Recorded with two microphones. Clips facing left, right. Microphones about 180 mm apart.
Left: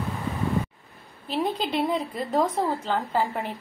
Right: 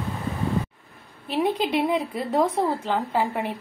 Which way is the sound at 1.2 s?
10° right (ahead or behind).